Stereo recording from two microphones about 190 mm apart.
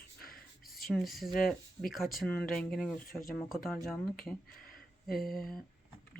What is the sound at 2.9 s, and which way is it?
Speech, 50° left (ahead or behind).